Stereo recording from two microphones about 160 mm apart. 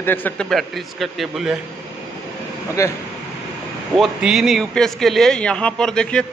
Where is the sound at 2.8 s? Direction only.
20° left (ahead or behind).